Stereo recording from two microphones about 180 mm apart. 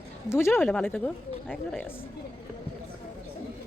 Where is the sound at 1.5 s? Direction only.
Centre (ahead or behind).